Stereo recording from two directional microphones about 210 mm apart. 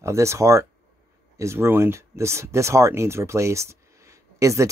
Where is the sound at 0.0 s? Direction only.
15° right (ahead or behind).